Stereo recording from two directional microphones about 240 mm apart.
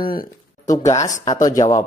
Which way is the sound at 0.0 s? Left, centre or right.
Left.